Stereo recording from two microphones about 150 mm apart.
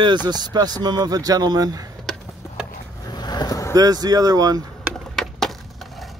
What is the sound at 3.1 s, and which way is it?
Vehicle, 30° left (ahead or behind).